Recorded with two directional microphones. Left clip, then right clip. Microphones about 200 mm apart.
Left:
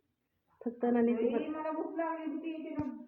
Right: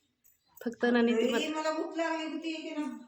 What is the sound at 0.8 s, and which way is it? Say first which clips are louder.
Speech: right 3 dB; 25° right (ahead or behind).